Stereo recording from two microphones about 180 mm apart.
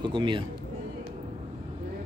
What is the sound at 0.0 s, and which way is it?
Speech, 25° right (ahead or behind).